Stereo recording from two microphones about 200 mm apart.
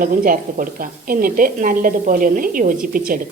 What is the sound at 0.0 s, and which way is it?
A woman's voice, 45° right (ahead or behind).